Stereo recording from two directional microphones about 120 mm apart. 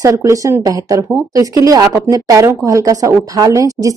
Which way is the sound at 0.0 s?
25° right (ahead or behind).